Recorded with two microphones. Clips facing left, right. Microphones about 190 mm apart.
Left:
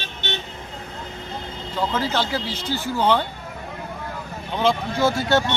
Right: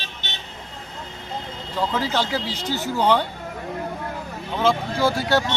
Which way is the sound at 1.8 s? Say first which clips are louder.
Even; 10° right (ahead or behind).